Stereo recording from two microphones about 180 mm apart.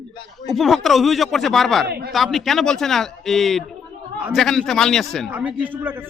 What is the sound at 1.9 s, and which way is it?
Speech, 65° right (ahead or behind).